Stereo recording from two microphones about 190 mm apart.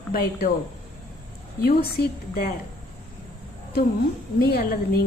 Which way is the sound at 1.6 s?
55° left (ahead or behind).